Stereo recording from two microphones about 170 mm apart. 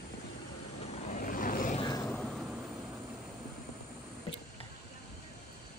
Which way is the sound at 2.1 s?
5° left (ahead or behind).